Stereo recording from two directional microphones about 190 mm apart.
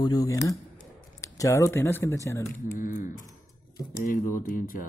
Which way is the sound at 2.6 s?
45° left (ahead or behind).